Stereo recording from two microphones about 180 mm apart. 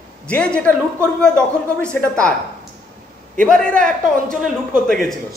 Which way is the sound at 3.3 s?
5° left (ahead or behind).